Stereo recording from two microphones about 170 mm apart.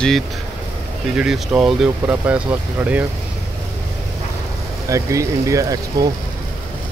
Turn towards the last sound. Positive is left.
turn(degrees=-20)  # may be behind; listen again after turning